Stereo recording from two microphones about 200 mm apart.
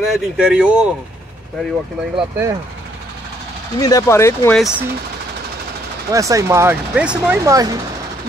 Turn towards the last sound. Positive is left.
turn(degrees=-15)  # may be behind; listen again after turning